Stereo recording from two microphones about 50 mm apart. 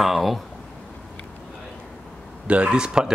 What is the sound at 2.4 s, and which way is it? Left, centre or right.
Speech, right.